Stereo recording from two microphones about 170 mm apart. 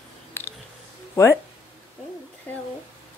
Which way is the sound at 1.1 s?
15° left (ahead or behind).